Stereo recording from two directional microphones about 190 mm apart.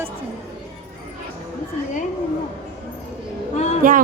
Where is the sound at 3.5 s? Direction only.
35° left (ahead or behind).